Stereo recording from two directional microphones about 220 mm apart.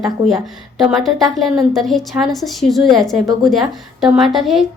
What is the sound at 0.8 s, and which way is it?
A woman's voice, centre (ahead or behind).